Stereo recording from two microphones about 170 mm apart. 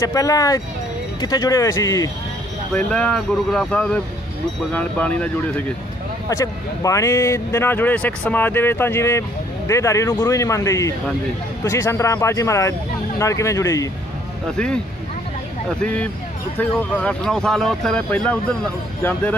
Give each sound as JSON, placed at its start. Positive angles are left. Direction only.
{"t": 0.0, "sound": "speech", "side_deg": 20}
{"t": 2.7, "sound": "speech", "side_deg": 5}
{"t": 6.2, "sound": "speech", "side_deg": 20}
{"t": 15.8, "sound": "speech", "side_deg": 5}